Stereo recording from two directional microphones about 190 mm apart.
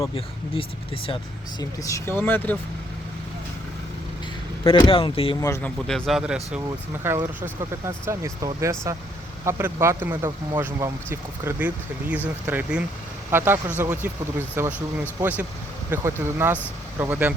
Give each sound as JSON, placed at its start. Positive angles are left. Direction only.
{"t": 1.0, "sound": "speech", "side_deg": 25}
{"t": 4.6, "sound": "speech", "side_deg": 25}
{"t": 5.4, "sound": "speech", "side_deg": 15}
{"t": 5.9, "sound": "speech", "side_deg": 0}